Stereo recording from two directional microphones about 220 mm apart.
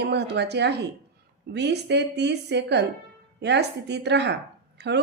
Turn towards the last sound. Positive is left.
turn(degrees=-50)  # may be behind; listen again after turning